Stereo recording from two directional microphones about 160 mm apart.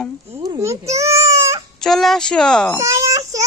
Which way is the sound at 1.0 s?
20° right (ahead or behind).